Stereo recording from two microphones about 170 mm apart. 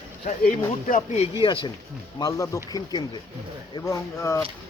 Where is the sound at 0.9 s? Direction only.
40° left (ahead or behind).